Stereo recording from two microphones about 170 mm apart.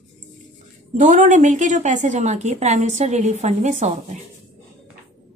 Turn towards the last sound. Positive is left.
turn(degrees=-45)  # may be behind; listen again after turning